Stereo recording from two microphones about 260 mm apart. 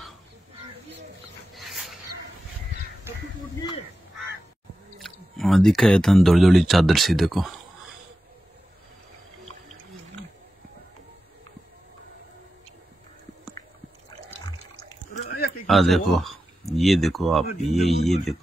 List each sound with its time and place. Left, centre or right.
1.5 s dog: centre
4.9 s speech: centre
15.2 s a sound: left
15.6 s speech: centre